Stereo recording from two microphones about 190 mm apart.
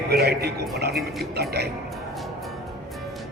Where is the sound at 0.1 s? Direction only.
55° right (ahead or behind).